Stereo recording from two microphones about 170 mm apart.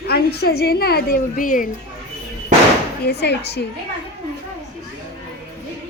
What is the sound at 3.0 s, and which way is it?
Speech, 80° left.